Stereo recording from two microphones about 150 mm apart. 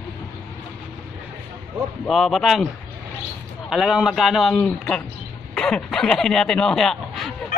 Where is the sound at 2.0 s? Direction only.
Centre (ahead or behind).